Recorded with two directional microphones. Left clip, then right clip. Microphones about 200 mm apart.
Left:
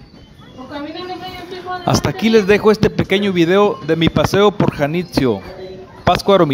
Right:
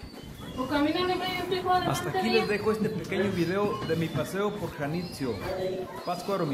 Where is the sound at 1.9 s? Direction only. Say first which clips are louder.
Left 12 dB; 40° left (ahead or behind).